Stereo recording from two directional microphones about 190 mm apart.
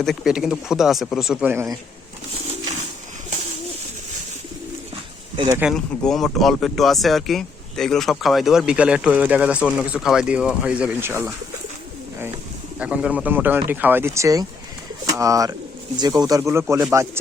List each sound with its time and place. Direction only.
0.0 s speech: centre (ahead or behind)
5.5 s speech: 10° right (ahead or behind)
5.7 s speech: 5° left (ahead or behind)
12.8 s speech: 5° right (ahead or behind)